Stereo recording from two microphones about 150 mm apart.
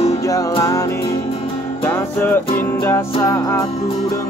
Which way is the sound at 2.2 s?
15° left (ahead or behind).